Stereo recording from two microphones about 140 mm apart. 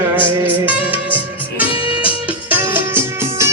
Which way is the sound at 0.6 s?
10° right (ahead or behind).